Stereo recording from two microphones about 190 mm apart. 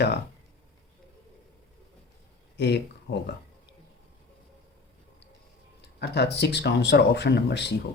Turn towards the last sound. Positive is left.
turn(degrees=65)  # may be behind; listen again after turning